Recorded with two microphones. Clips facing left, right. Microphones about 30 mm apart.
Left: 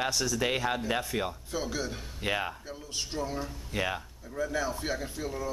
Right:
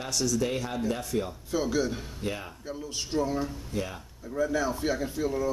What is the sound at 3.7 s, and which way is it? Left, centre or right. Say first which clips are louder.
Speech: left 7 dB; left.